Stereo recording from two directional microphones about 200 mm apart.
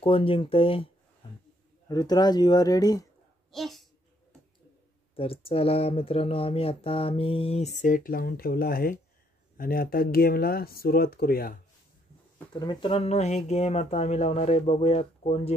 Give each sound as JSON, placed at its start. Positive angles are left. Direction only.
{"t": 0.0, "sound": "speech", "side_deg": 25}
{"t": 1.9, "sound": "speech", "side_deg": 20}
{"t": 3.5, "sound": "speech", "side_deg": 0}
{"t": 5.1, "sound": "speech", "side_deg": 30}
{"t": 12.5, "sound": "speech", "side_deg": 25}